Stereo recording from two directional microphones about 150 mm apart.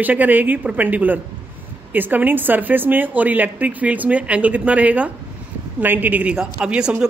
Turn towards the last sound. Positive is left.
turn(degrees=-5)  # may be behind; listen again after turning